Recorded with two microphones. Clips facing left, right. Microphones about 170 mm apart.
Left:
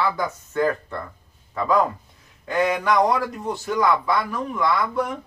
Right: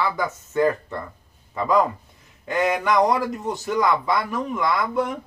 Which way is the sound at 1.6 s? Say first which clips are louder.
Even; 15° right (ahead or behind).